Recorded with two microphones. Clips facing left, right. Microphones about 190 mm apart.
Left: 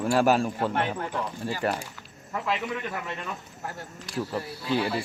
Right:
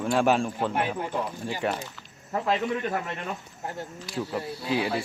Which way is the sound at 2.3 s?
35° right (ahead or behind).